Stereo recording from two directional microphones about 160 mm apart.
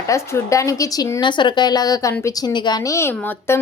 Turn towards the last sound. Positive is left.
turn(degrees=15)  # may be behind; listen again after turning